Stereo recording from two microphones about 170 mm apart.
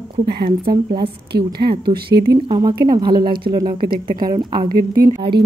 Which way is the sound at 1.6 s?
30° right (ahead or behind).